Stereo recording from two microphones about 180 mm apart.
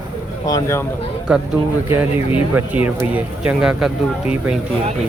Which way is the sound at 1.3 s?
5° right (ahead or behind).